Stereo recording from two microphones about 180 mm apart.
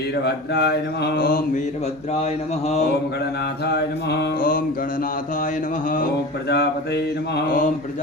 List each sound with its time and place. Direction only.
0.3 s a sound: 65° left (ahead or behind)
4.1 s mantra: 70° left (ahead or behind)
6.5 s mantra: 65° left (ahead or behind)